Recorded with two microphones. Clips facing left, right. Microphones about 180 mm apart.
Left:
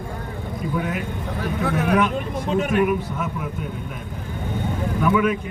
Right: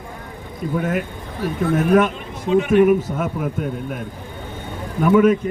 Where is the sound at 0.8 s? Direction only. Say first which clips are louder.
Right 6 dB; 45° right (ahead or behind).